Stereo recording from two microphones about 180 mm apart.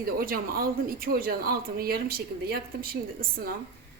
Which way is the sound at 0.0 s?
55° right (ahead or behind).